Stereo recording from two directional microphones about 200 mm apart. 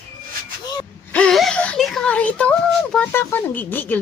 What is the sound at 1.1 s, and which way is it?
Speech, 5° left (ahead or behind).